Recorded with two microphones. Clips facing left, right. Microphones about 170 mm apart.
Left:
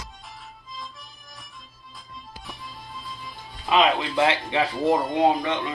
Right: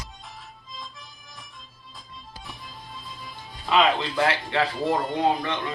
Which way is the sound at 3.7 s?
20° left (ahead or behind).